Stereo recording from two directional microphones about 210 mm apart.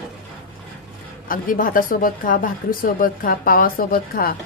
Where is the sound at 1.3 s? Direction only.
40° left (ahead or behind).